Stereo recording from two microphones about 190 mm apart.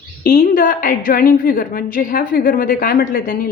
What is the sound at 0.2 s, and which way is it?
A woman's voice, 50° left (ahead or behind).